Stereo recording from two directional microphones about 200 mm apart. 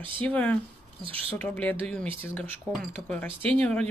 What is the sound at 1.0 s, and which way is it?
Speech, 30° right (ahead or behind).